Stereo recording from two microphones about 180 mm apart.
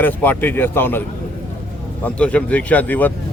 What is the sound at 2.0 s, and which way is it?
Speech, 5° left (ahead or behind).